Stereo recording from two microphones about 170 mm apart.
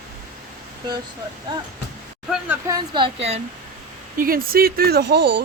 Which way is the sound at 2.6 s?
25° right (ahead or behind).